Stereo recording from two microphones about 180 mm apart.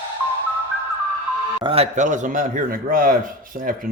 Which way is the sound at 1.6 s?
35° right (ahead or behind).